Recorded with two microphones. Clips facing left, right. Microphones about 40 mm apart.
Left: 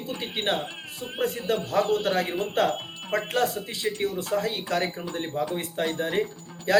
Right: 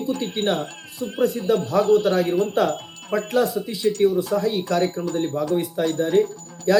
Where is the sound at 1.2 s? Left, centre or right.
Left.